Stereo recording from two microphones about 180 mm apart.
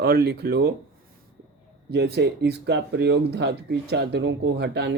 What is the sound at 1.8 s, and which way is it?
Speech, 65° right (ahead or behind).